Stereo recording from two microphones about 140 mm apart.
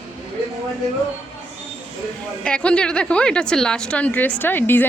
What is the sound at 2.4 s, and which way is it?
A woman's voice, 5° left (ahead or behind).